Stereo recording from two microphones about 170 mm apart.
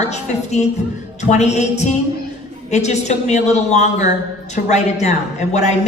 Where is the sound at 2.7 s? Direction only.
40° left (ahead or behind).